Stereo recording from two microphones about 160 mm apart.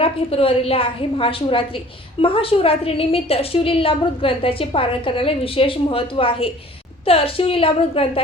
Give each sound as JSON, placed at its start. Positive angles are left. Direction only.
{"t": 0.0, "sound": "a woman's voice", "side_deg": 35}